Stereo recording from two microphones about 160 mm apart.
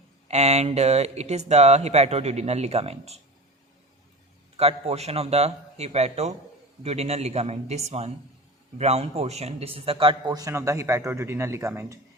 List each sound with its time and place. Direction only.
0.3 s speech: 45° right (ahead or behind)
4.5 s a man's voice: 40° right (ahead or behind); by 11.9 s 15° right (ahead or behind)